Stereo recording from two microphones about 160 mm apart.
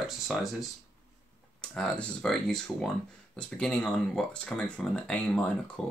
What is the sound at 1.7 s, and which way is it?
Speech, 5° left (ahead or behind).